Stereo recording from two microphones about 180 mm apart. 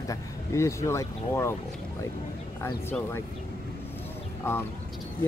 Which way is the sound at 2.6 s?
10° left (ahead or behind).